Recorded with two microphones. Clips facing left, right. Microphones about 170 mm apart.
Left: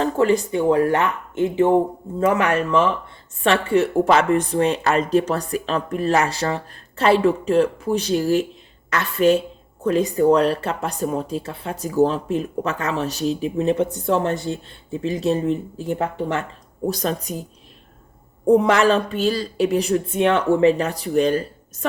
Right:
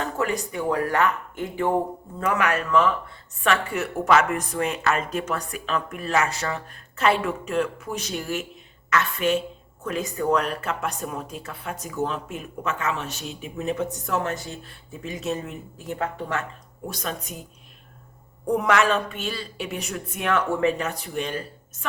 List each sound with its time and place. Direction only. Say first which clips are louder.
0.0 s speech: left 8 dB; 30° left (ahead or behind)
18.4 s speech: left 6 dB; 30° left (ahead or behind)